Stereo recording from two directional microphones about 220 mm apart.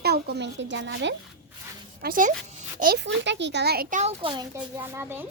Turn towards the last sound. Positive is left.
turn(degrees=-10)  # may be behind; listen again after turning